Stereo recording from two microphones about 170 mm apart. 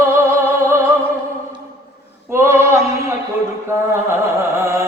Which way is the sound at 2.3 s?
15° right (ahead or behind).